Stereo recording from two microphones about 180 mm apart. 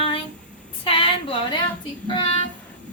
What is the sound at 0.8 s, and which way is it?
Female singing, 30° left (ahead or behind).